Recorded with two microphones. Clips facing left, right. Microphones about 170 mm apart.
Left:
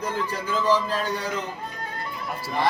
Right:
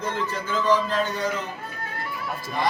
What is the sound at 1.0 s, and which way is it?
Speech, 10° left (ahead or behind).